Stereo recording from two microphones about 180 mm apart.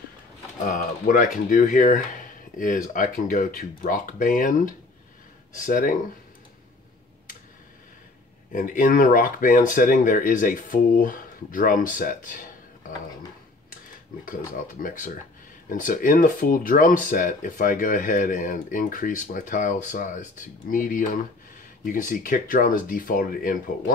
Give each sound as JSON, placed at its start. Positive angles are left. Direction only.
{"t": 0.7, "sound": "speech", "side_deg": 45}
{"t": 8.5, "sound": "speech", "side_deg": 50}
{"t": 14.7, "sound": "speech", "side_deg": 45}